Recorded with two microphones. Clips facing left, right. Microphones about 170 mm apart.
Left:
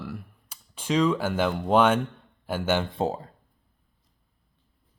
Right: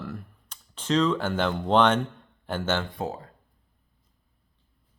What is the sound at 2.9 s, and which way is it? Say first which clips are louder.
Speech: left 5 dB; 30° left (ahead or behind).